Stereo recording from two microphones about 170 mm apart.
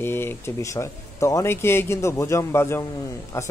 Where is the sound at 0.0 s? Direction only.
15° left (ahead or behind).